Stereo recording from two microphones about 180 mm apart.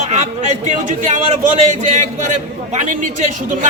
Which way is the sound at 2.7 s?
45° right (ahead or behind).